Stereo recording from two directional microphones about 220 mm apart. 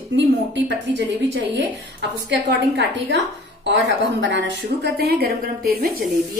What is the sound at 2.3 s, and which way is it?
A woman's voice, 50° right (ahead or behind).